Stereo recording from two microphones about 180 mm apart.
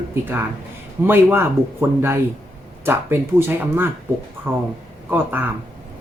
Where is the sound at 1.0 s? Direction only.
10° right (ahead or behind).